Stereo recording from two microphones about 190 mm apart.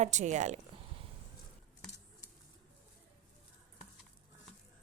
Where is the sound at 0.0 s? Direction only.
40° right (ahead or behind).